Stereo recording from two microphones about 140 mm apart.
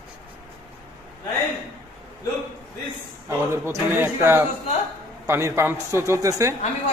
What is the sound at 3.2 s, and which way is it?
A man's voice, 15° right (ahead or behind).